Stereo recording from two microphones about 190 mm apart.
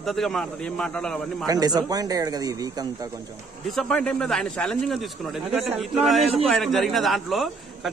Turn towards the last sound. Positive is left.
turn(degrees=0)  # may be behind; listen again after turning